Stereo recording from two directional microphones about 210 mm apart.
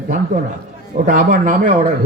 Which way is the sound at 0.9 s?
40° right (ahead or behind).